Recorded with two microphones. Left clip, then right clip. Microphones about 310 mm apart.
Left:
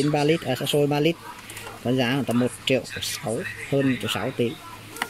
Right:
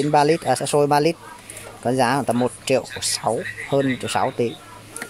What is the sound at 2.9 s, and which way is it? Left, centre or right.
Speech, centre.